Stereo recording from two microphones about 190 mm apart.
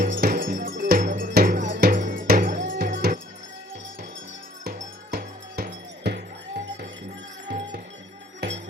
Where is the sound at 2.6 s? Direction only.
60° right (ahead or behind).